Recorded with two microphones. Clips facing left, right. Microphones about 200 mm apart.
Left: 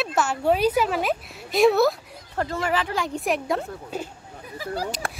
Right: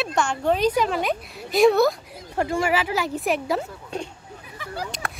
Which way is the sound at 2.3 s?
10° right (ahead or behind).